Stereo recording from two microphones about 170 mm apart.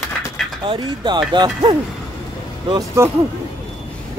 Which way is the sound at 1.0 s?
25° right (ahead or behind).